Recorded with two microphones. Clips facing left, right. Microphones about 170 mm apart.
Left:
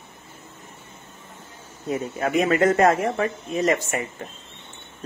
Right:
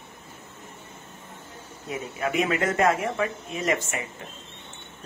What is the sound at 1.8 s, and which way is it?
Speech, 45° left (ahead or behind).